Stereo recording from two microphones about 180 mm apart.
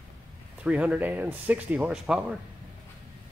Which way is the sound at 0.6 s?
5° right (ahead or behind).